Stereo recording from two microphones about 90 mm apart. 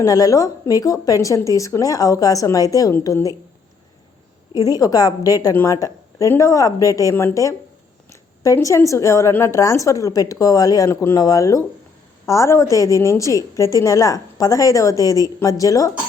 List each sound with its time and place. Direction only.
0.0 s a woman's voice: 40° left (ahead or behind)
4.5 s a woman's voice: 40° left (ahead or behind)
8.6 s a woman's voice: 35° left (ahead or behind)